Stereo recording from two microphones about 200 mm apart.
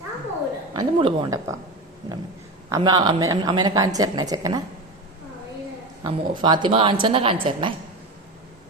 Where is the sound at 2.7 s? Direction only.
20° right (ahead or behind).